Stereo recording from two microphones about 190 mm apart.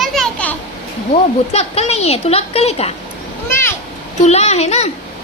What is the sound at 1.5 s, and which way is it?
A woman's voice, 35° left (ahead or behind).